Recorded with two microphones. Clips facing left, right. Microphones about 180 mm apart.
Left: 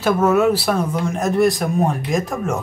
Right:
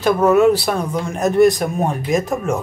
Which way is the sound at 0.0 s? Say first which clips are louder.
Right 3 dB; 5° left (ahead or behind).